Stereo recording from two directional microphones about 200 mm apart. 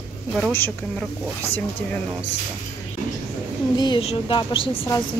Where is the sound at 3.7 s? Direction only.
20° left (ahead or behind).